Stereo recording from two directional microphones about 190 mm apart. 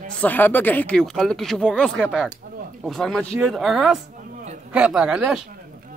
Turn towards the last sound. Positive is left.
turn(degrees=-5)  # may be behind; listen again after turning